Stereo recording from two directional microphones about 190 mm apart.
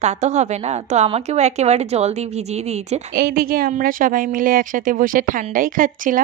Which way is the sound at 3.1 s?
55° right (ahead or behind).